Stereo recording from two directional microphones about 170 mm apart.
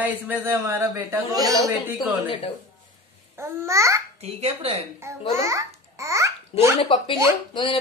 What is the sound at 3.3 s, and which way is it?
Speech, 15° right (ahead or behind).